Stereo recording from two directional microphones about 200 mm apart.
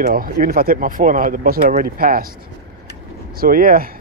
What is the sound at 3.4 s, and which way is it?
Speech, 45° right (ahead or behind).